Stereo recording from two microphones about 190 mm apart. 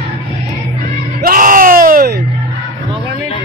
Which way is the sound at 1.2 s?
45° right (ahead or behind).